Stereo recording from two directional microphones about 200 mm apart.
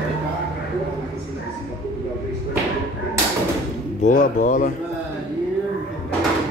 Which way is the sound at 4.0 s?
40° left (ahead or behind).